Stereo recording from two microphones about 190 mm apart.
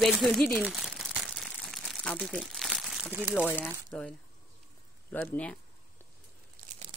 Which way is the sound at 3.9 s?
5° left (ahead or behind).